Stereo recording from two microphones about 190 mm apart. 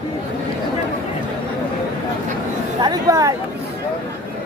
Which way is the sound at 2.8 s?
20° right (ahead or behind).